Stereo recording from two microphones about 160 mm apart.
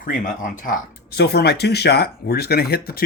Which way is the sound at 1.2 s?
90° left.